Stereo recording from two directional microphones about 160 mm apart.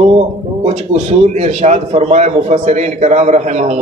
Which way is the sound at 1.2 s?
45° right (ahead or behind).